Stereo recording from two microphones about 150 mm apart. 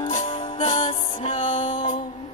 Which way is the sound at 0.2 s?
35° left (ahead or behind).